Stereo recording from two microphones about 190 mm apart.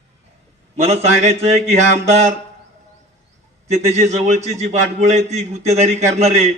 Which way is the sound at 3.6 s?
35° right (ahead or behind).